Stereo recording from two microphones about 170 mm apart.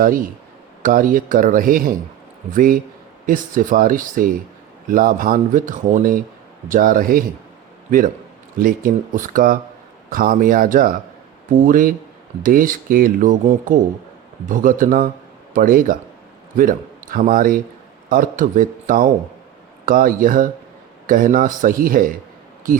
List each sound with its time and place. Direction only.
0.8 s a man's voice: 50° right (ahead or behind)